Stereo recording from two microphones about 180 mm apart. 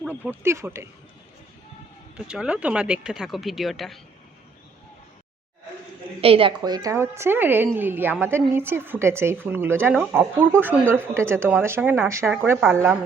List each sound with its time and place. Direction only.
0.0 s a woman's voice: 10° right (ahead or behind)
2.1 s speech: 5° right (ahead or behind)
6.2 s speech: 30° right (ahead or behind)
6.6 s a woman's voice: 20° right (ahead or behind)